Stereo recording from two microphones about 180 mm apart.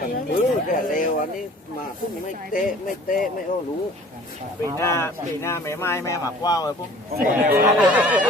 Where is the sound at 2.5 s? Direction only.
50° left (ahead or behind).